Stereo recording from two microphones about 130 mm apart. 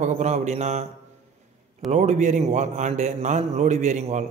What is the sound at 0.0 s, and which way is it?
Speech, 65° right (ahead or behind).